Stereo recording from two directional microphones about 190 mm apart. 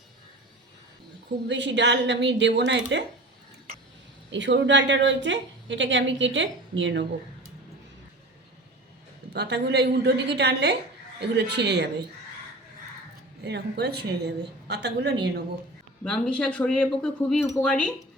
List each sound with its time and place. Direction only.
1.5 s a woman's voice: 70° right (ahead or behind)
4.3 s a woman's voice: 70° right (ahead or behind)
9.3 s a woman's voice: 60° right (ahead or behind)
13.4 s a woman's voice: 60° right (ahead or behind)
16.0 s speech: 5° left (ahead or behind)